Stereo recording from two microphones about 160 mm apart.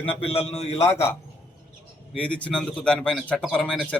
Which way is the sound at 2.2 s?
10° left (ahead or behind).